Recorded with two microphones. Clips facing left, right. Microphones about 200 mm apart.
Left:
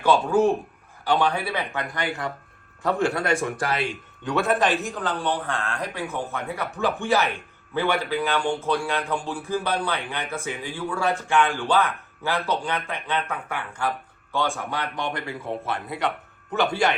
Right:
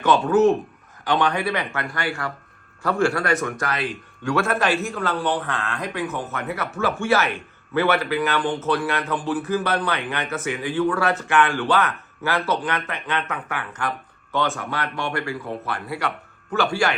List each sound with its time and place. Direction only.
0.0 s a man's voice: 10° left (ahead or behind)